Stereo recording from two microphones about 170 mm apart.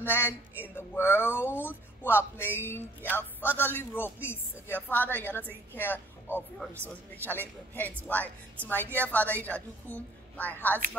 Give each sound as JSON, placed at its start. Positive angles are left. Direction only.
{"t": 0.0, "sound": "a man's voice", "side_deg": 15}